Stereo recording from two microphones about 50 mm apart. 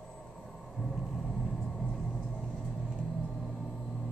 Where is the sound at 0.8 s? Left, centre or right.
Centre.